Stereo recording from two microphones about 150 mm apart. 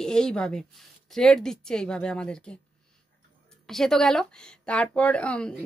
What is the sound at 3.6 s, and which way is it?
Speech, 5° left (ahead or behind).